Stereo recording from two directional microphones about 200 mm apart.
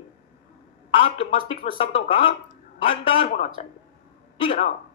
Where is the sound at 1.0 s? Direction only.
25° left (ahead or behind).